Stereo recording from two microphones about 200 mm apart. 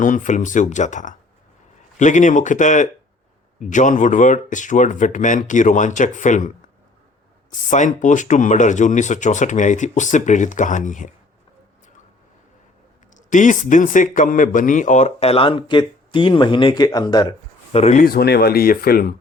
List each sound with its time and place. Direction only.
0.0 s a man's voice: 40° left (ahead or behind)
7.7 s a man's voice: 40° left (ahead or behind)
13.1 s a man's voice: 40° left (ahead or behind)
18.0 s speech: 50° left (ahead or behind)